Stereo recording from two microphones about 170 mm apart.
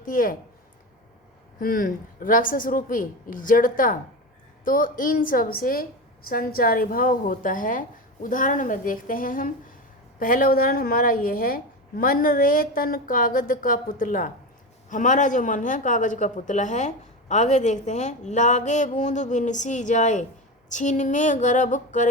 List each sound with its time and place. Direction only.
0.0 s speech: 55° left (ahead or behind)
1.5 s a woman's voice: 55° left (ahead or behind)